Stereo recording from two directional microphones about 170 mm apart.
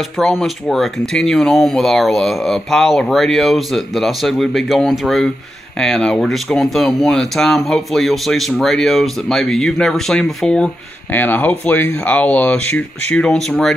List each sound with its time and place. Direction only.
0.0 s speech: centre (ahead or behind)